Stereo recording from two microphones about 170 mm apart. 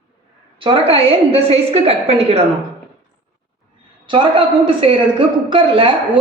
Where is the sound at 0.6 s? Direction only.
35° right (ahead or behind).